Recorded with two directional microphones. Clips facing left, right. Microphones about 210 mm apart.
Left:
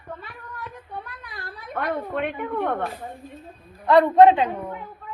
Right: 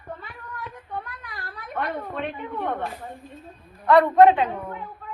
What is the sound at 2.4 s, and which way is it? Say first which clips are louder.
Speech: left 5 dB; 60° left (ahead or behind).